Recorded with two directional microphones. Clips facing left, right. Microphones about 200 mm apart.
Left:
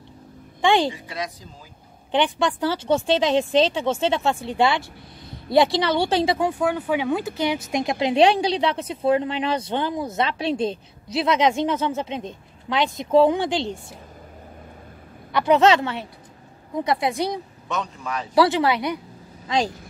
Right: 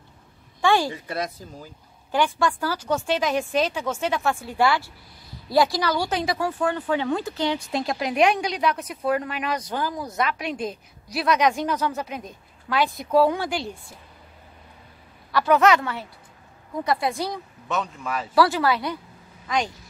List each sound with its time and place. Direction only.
0.6 s a woman's voice: 20° left (ahead or behind)
1.1 s speech: 50° right (ahead or behind)
2.0 s speech: 20° left (ahead or behind)
6.6 s speech: 10° left (ahead or behind)
15.3 s speech: 20° left (ahead or behind)
17.6 s a man's voice: 5° right (ahead or behind)
18.3 s speech: 20° left (ahead or behind)
19.4 s speech: 30° left (ahead or behind)